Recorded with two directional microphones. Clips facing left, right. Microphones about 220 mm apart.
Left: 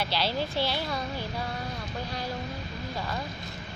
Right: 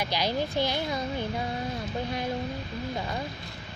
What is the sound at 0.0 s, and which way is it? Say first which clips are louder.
A woman's voice: right 1 dB; 15° right (ahead or behind).